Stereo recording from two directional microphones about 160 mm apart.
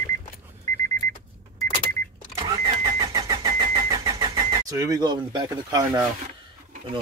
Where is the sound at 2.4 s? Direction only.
25° right (ahead or behind).